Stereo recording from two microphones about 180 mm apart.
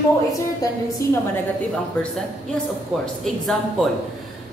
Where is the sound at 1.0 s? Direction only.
15° left (ahead or behind).